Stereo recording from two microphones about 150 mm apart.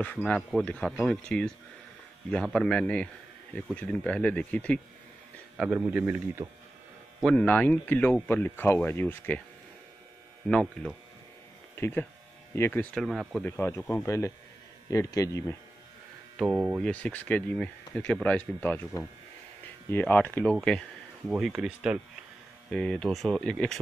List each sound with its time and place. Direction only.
0.0 s speech: 10° left (ahead or behind)
5.6 s speech: 10° right (ahead or behind)
7.2 s speech: 10° left (ahead or behind)
10.5 s speech: 5° left (ahead or behind)
12.9 s speech: centre (ahead or behind)
13.4 s speech: 15° left (ahead or behind)
16.4 s speech: 15° right (ahead or behind)
16.8 s speech: 10° left (ahead or behind)
19.9 s speech: 10° left (ahead or behind)
21.3 s speech: 5° right (ahead or behind)
22.7 s speech: 5° left (ahead or behind)